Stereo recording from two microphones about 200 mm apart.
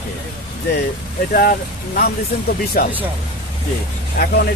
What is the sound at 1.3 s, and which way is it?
Speech, 45° left (ahead or behind).